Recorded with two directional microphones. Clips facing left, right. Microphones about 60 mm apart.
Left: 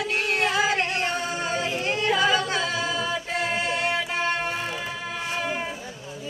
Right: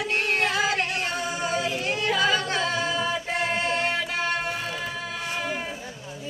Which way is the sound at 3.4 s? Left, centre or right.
Centre.